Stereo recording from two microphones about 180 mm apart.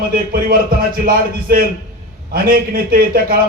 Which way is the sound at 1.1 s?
55° right (ahead or behind).